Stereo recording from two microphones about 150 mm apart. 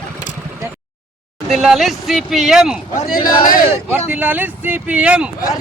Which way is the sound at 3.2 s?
30° left (ahead or behind).